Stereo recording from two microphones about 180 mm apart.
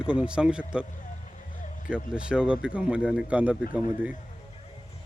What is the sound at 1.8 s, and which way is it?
Speech, 5° right (ahead or behind).